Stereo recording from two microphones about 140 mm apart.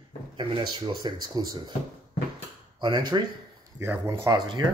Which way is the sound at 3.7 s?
20° right (ahead or behind).